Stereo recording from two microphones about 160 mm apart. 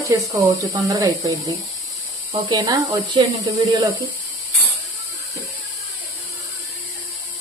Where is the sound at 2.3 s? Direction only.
30° right (ahead or behind).